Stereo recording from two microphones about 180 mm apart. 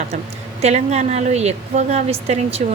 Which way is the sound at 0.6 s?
40° right (ahead or behind).